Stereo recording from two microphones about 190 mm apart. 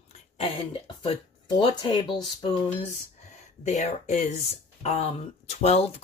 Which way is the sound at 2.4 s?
35° left (ahead or behind).